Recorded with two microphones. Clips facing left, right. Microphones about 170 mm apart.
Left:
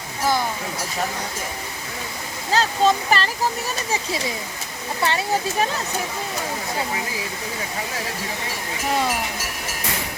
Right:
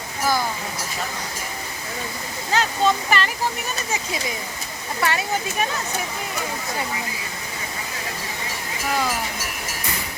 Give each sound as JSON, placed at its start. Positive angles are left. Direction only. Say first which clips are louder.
{"t": 2.5, "sound": "speech", "louder": "left 2 dB", "side_deg": 35}
{"t": 5.0, "sound": "speech", "louder": "even", "side_deg": 25}